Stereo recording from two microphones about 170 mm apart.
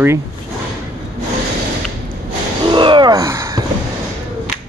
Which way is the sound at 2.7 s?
30° right (ahead or behind).